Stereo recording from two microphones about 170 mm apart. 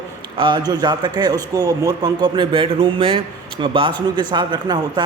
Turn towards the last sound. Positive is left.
turn(degrees=-25)  # may be behind; listen again after turning